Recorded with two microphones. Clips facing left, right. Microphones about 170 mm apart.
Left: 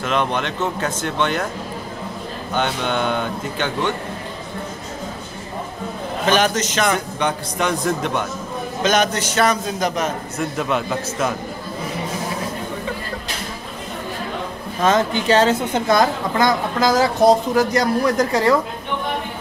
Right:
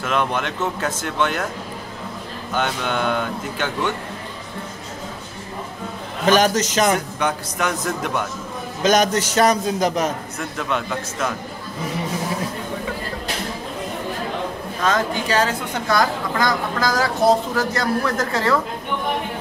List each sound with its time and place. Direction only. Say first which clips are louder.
0.3 s speech: left 1 dB; 5° right (ahead or behind)
2.5 s speech: left 1 dB; 5° right (ahead or behind)
6.2 s a man's voice: right 2 dB; 40° right (ahead or behind)
6.9 s speech: even; 5° right (ahead or behind)
8.8 s a man's voice: right 2 dB; 40° right (ahead or behind)
10.7 s a man's voice: left 3 dB; 10° left (ahead or behind)
14.8 s a woman's voice: left 4 dB; 20° left (ahead or behind)